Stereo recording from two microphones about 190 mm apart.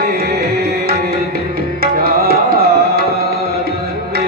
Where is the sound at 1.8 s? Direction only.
50° right (ahead or behind).